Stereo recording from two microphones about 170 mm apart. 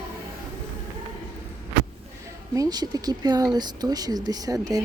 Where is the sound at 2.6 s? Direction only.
25° right (ahead or behind).